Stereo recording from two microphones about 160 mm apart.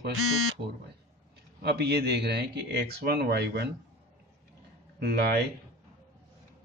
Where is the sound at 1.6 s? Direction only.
90° right.